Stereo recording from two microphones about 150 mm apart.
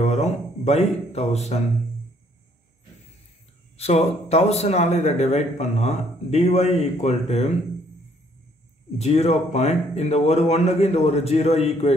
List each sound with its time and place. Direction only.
0.0 s a man's voice: 45° left (ahead or behind)
3.7 s a man's voice: 45° left (ahead or behind)
8.9 s a man's voice: 45° left (ahead or behind)